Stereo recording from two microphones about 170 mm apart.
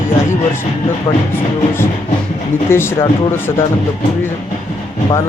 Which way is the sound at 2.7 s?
15° left (ahead or behind).